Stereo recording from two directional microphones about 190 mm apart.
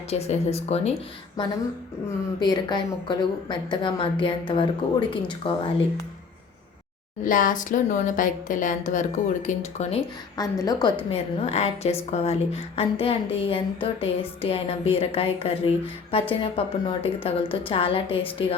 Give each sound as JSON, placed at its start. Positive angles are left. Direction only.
{"t": 0.1, "sound": "a woman's voice", "side_deg": 35}
{"t": 1.4, "sound": "a woman's voice", "side_deg": 20}
{"t": 7.3, "sound": "a woman's voice", "side_deg": 45}
{"t": 10.3, "sound": "a woman's voice", "side_deg": 20}